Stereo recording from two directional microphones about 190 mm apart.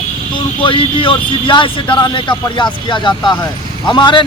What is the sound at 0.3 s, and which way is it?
A man's voice, 25° left (ahead or behind).